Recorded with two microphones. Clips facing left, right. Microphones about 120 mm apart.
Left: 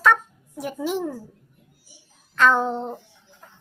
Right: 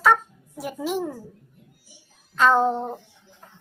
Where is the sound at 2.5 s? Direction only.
30° right (ahead or behind).